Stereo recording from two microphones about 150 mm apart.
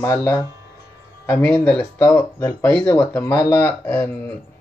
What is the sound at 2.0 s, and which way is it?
Speech, 20° left (ahead or behind).